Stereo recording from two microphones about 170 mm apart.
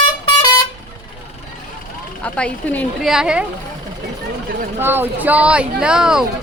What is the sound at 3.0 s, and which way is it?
Speech, 5° right (ahead or behind).